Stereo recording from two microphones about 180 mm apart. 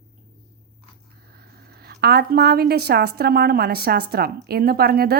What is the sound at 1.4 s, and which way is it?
A woman's voice, 60° right (ahead or behind).